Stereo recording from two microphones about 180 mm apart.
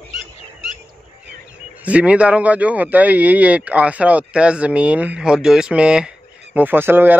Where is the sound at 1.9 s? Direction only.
5° right (ahead or behind).